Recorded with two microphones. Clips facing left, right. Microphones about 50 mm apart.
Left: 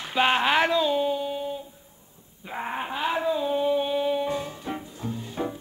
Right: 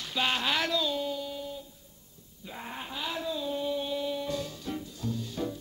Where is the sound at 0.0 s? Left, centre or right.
Left.